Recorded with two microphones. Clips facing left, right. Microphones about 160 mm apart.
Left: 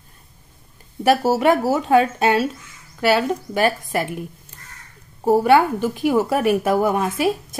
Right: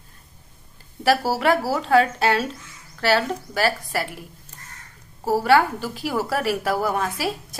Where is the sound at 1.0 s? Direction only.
20° left (ahead or behind).